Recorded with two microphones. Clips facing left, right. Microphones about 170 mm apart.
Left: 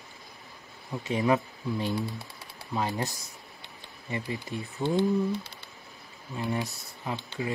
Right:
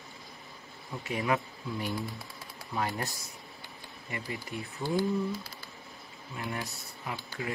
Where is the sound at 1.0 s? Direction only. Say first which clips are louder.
Left 5 dB; 20° left (ahead or behind).